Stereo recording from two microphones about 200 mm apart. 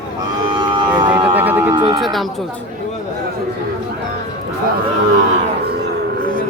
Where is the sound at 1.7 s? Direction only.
20° right (ahead or behind).